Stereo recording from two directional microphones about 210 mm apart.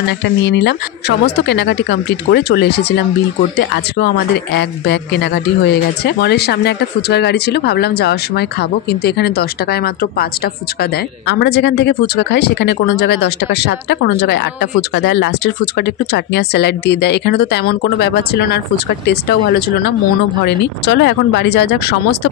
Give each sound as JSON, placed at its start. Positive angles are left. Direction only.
{"t": 0.0, "sound": "speech", "side_deg": 55}